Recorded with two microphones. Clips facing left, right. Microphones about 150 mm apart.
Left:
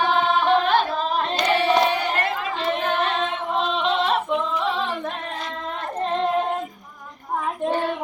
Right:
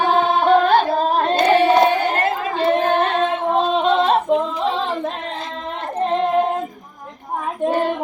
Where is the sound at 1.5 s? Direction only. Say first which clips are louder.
Right 5 dB; 45° right (ahead or behind).